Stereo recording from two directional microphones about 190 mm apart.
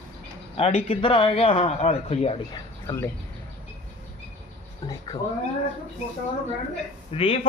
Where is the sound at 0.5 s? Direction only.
30° left (ahead or behind).